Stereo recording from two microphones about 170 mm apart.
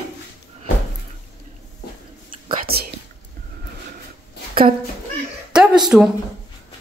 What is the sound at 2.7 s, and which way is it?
Whispering, 65° right (ahead or behind).